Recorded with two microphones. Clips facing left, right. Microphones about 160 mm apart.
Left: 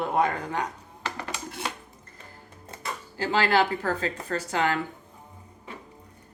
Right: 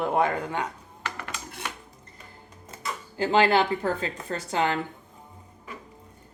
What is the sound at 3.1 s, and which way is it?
Speech, 25° right (ahead or behind).